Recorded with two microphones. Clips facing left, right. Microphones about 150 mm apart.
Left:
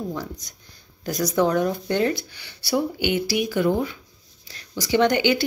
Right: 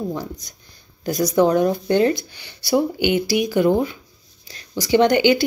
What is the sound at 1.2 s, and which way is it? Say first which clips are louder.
Speech: right 4 dB; 15° right (ahead or behind).